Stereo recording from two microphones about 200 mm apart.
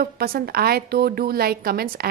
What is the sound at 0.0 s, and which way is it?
A woman's voice, 50° right (ahead or behind).